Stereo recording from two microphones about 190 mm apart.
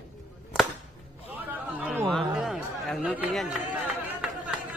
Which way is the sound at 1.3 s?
10° right (ahead or behind).